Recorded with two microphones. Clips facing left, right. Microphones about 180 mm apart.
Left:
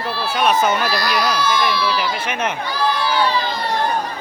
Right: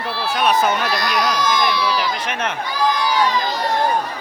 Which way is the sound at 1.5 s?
15° right (ahead or behind).